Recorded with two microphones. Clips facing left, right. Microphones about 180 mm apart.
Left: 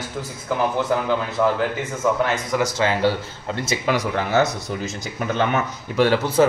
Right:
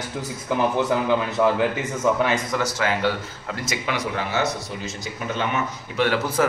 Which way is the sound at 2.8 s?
30° left (ahead or behind).